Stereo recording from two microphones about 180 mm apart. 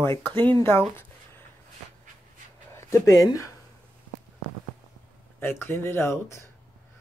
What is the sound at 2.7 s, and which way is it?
Speech, 15° left (ahead or behind).